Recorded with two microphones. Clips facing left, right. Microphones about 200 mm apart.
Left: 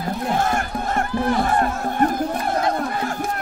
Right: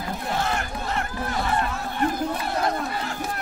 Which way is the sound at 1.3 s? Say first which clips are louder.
Left 4 dB; 45° left (ahead or behind).